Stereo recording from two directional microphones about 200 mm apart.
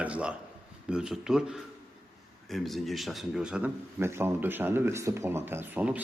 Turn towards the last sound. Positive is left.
turn(degrees=-10)  # may be behind; listen again after turning